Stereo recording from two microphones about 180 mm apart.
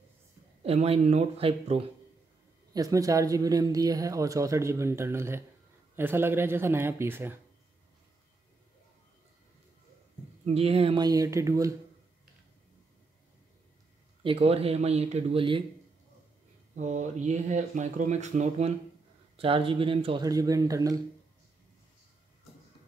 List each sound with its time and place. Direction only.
0.6 s speech: 35° right (ahead or behind)
2.7 s speech: 20° right (ahead or behind)
10.4 s speech: 35° right (ahead or behind); by 11.7 s 20° right (ahead or behind)
14.2 s speech: 30° right (ahead or behind)
16.7 s speech: 40° right (ahead or behind); by 21.0 s 20° right (ahead or behind)